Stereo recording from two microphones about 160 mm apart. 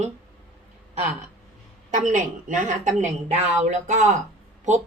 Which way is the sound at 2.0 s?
50° right (ahead or behind).